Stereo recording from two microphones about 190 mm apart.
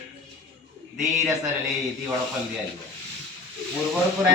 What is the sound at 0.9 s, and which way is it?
Speech, centre (ahead or behind).